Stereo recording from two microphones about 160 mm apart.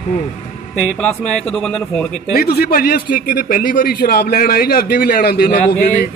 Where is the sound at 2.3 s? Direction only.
70° left (ahead or behind).